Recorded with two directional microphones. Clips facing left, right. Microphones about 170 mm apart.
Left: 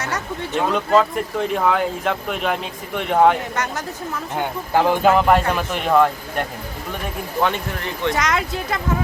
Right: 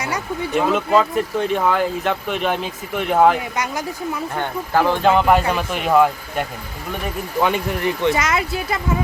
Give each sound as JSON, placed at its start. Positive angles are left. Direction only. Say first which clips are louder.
{"t": 0.0, "sound": "speech", "louder": "right 2 dB", "side_deg": -10}
{"t": 4.7, "sound": "speech", "louder": "even", "side_deg": 20}
{"t": 5.0, "sound": "speech", "louder": "right 1 dB", "side_deg": 0}
{"t": 7.4, "sound": "speech", "louder": "right 4 dB", "side_deg": -10}